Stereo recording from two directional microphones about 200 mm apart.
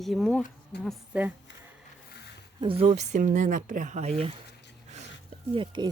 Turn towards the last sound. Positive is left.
turn(degrees=-20)  # may be behind; listen again after turning